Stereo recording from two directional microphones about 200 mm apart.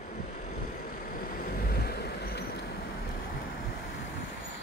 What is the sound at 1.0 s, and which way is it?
Vehicle, 45° left (ahead or behind).